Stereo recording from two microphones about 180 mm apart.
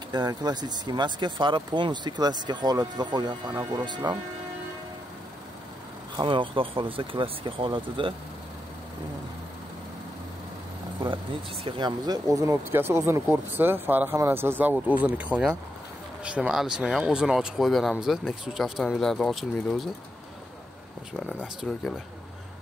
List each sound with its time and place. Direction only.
0.1 s speech: 25° right (ahead or behind)
6.1 s speech: 25° right (ahead or behind)
11.6 s speech: 25° right (ahead or behind); by 19.9 s 5° left (ahead or behind)
21.7 s speech: 5° left (ahead or behind)